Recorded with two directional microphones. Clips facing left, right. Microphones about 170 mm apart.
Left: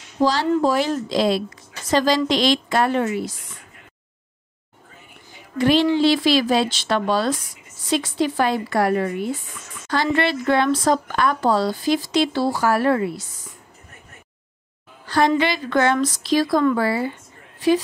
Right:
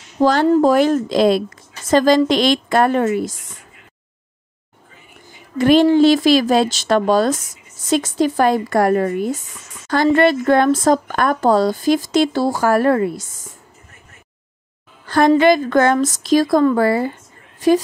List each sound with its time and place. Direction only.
0.2 s speech: 55° right (ahead or behind)
5.6 s speech: 50° right (ahead or behind)
15.0 s a woman's voice: 50° right (ahead or behind)